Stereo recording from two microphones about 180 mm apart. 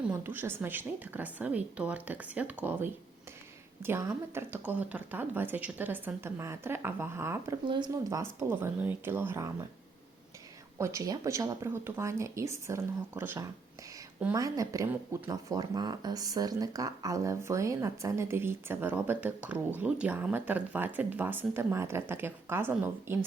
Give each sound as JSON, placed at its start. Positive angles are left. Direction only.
{"t": 0.0, "sound": "speech", "side_deg": -10}
{"t": 7.7, "sound": "speech", "side_deg": -25}
{"t": 8.2, "sound": "speech", "side_deg": -10}
{"t": 10.8, "sound": "speech", "side_deg": -15}